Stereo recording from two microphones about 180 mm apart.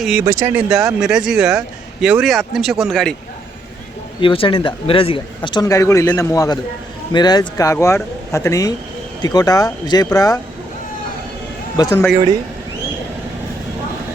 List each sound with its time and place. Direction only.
0.0 s a man's voice: 5° right (ahead or behind)
0.3 s speech: 15° right (ahead or behind)
0.9 s a man's voice: 5° right (ahead or behind)
4.2 s a man's voice: 30° left (ahead or behind)
11.8 s a man's voice: 20° left (ahead or behind)